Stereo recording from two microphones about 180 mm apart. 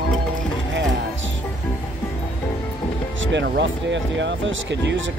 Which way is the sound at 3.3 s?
80° right.